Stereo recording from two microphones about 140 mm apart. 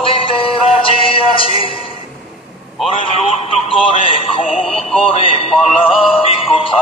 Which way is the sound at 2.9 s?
40° left (ahead or behind).